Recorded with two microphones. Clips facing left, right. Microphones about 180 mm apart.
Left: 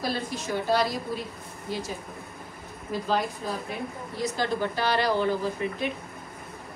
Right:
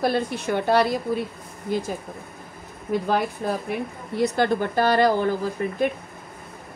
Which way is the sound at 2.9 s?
60° right (ahead or behind).